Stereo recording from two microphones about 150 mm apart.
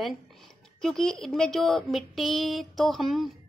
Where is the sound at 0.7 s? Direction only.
5° left (ahead or behind).